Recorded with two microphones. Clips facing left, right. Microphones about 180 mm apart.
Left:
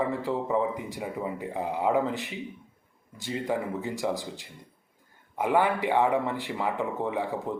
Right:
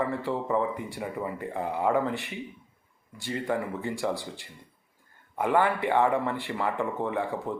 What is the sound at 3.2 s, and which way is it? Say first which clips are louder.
Speech: even; 15° left (ahead or behind).